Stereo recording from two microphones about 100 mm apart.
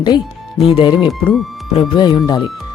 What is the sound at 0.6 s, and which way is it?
Speech, 75° left (ahead or behind).